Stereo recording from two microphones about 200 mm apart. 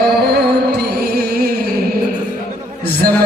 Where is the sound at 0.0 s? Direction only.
55° right (ahead or behind).